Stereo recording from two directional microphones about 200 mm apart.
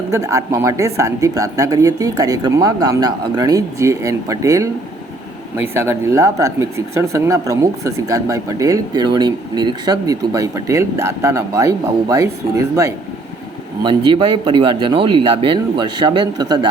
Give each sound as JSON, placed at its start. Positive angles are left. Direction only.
{"t": 0.1, "sound": "speech", "side_deg": -15}
{"t": 13.8, "sound": "speech", "side_deg": -25}